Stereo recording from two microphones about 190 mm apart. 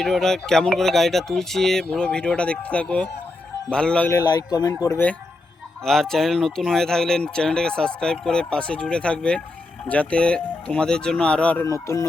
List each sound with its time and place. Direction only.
0.0 s speech: 5° left (ahead or behind)
4.2 s speech: 20° left (ahead or behind)
5.8 s speech: centre (ahead or behind)